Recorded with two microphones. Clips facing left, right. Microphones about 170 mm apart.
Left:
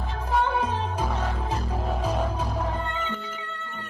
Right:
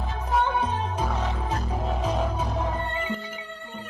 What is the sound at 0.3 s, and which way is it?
Music, 10° right (ahead or behind).